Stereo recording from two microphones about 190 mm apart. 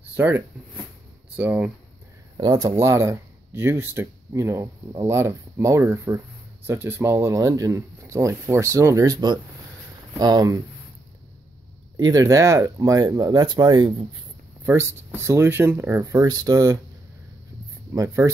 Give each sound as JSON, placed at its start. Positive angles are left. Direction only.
{"t": 0.1, "sound": "speech", "side_deg": -10}
{"t": 2.3, "sound": "speech", "side_deg": -20}
{"t": 12.0, "sound": "speech", "side_deg": -20}
{"t": 14.7, "sound": "speech", "side_deg": -15}
{"t": 17.9, "sound": "speech", "side_deg": -15}